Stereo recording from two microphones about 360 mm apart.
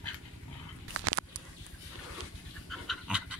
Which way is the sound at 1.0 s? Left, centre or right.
Right.